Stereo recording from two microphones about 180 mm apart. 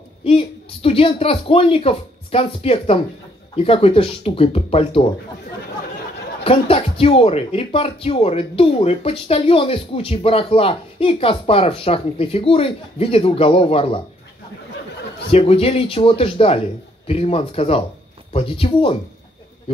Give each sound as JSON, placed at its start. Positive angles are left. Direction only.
{"t": 0.2, "sound": "speech", "side_deg": 30}
{"t": 6.4, "sound": "speech", "side_deg": 30}
{"t": 15.3, "sound": "speech", "side_deg": 30}